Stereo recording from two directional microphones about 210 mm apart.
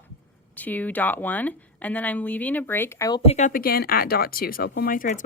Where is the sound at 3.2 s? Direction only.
30° left (ahead or behind).